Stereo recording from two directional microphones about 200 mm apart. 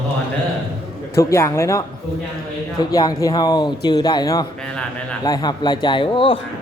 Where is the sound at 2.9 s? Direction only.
20° left (ahead or behind).